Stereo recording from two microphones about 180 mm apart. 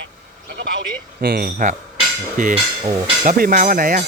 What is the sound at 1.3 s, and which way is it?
Speech, 55° right (ahead or behind).